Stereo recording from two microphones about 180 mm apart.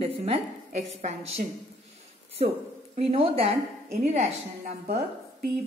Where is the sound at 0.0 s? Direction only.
30° right (ahead or behind).